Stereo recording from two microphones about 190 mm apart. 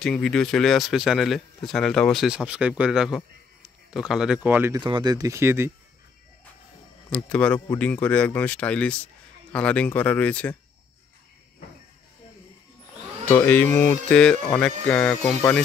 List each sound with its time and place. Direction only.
0.0 s speech: 5° left (ahead or behind)
4.7 s speech: 20° right (ahead or behind)
7.1 s speech: 5° left (ahead or behind)
13.3 s speech: 10° left (ahead or behind)